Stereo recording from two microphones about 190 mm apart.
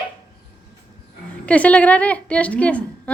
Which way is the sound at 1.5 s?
5° left (ahead or behind).